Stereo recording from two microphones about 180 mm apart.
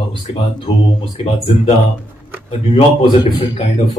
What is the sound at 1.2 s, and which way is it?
A woman's voice, 35° left (ahead or behind).